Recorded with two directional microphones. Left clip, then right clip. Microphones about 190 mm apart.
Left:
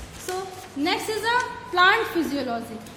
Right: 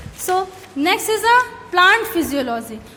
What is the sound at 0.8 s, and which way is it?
A woman's voice, 40° right (ahead or behind).